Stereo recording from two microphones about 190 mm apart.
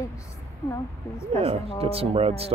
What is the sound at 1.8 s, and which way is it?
Speech, 30° right (ahead or behind).